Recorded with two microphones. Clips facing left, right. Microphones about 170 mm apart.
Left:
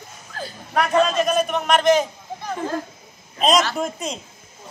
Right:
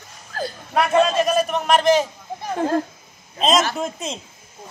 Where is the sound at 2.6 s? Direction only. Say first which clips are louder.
Right 7 dB; 45° right (ahead or behind).